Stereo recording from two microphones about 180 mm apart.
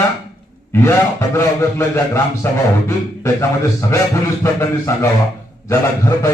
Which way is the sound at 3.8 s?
15° left (ahead or behind).